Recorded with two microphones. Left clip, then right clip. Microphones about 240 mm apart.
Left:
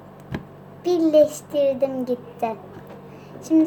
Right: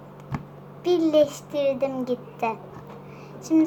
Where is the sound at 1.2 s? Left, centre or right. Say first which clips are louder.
Left 4 dB; centre.